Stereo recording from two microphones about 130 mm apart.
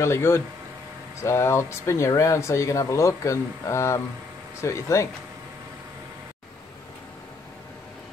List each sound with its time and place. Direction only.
0.0 s speech: 20° left (ahead or behind)